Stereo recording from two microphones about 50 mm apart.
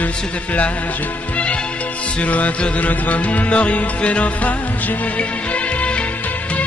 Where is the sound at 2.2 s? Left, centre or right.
Left.